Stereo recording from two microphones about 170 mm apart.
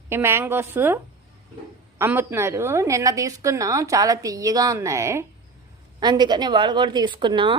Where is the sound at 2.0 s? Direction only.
10° right (ahead or behind); by 7.5 s 30° right (ahead or behind).